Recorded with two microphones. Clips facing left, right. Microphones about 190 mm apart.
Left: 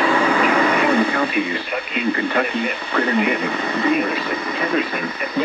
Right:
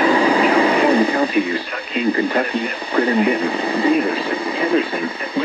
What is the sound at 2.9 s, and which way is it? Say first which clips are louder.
Speech: right 3 dB; 35° right (ahead or behind).